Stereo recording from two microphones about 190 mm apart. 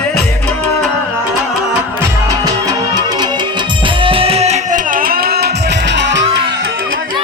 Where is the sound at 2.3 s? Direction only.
20° right (ahead or behind); by 6.2 s 70° right (ahead or behind).